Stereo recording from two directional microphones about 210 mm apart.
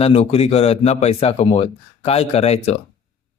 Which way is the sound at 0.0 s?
30° left (ahead or behind).